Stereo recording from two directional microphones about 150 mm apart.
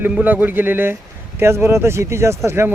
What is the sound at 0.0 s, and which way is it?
Speech, 10° right (ahead or behind).